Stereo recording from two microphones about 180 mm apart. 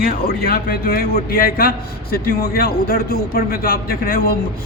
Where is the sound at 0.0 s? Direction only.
55° left (ahead or behind).